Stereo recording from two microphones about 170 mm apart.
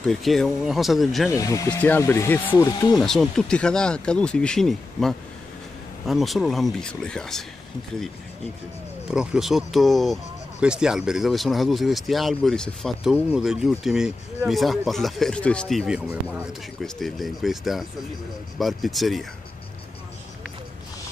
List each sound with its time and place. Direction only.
0.0 s speech: centre (ahead or behind)
1.3 s speech: 20° left (ahead or behind)
3.0 s speech: centre (ahead or behind)
9.1 s speech: 5° right (ahead or behind)